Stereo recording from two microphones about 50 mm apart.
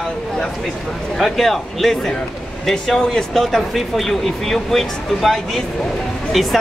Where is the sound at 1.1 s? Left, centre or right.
Centre.